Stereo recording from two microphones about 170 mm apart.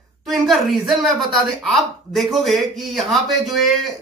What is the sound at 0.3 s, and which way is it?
A man's voice, centre (ahead or behind).